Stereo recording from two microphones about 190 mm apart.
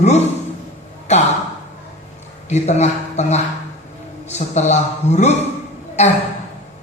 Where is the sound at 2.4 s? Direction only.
35° left (ahead or behind).